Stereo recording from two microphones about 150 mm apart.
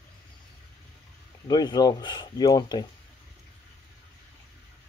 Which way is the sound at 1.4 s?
25° left (ahead or behind).